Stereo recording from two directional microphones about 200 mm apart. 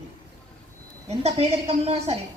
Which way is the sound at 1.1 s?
30° right (ahead or behind).